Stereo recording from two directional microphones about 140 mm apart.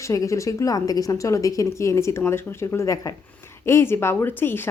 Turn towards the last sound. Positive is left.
turn(degrees=15)  # may be behind; listen again after turning